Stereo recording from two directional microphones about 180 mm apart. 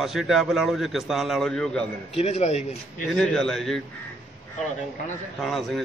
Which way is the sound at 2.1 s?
35° left (ahead or behind).